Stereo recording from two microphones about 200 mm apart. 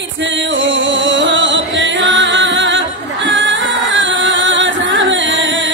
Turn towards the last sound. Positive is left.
turn(degrees=-65)  # may be behind; listen again after turning